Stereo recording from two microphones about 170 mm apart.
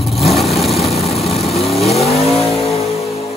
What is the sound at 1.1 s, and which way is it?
Vehicle, 35° left (ahead or behind).